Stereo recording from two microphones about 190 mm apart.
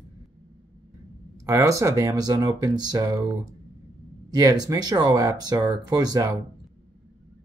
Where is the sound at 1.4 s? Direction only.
15° right (ahead or behind).